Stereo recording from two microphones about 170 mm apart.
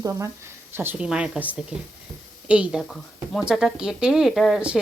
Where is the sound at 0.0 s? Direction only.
20° right (ahead or behind).